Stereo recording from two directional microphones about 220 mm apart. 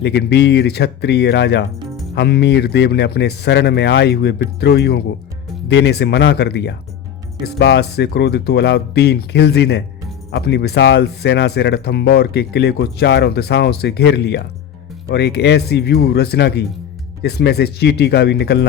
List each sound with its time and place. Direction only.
0.0 s speech: 50° left (ahead or behind)
1.9 s music: centre (ahead or behind)
2.1 s speech: 50° left (ahead or behind)